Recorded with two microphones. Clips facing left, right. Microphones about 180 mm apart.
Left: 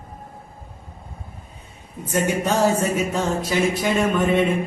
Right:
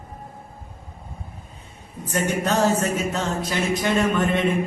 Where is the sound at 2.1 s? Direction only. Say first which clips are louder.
Left 2 dB; 10° left (ahead or behind).